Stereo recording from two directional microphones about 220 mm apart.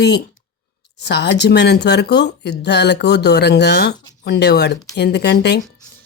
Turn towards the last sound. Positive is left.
turn(degrees=50)  # may be behind; listen again after turning